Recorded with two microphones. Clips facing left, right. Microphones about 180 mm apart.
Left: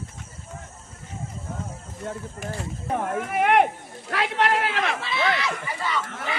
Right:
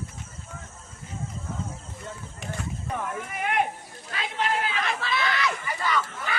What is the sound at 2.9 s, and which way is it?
Speech, 60° left (ahead or behind).